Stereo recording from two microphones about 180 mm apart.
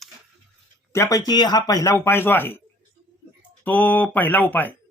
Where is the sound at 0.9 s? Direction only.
15° left (ahead or behind).